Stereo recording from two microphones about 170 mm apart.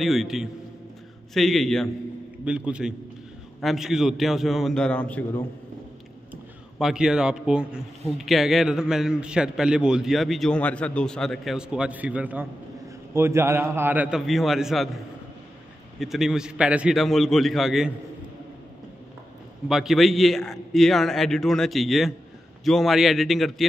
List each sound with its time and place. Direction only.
0.0 s a man's voice: centre (ahead or behind)
6.8 s a man's voice: 5° right (ahead or behind)
16.0 s a man's voice: centre (ahead or behind)
19.7 s a man's voice: centre (ahead or behind)